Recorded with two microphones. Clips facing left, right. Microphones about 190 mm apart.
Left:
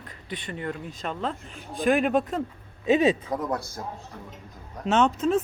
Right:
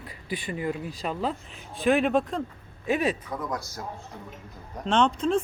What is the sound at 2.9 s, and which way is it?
Speech, 25° left (ahead or behind).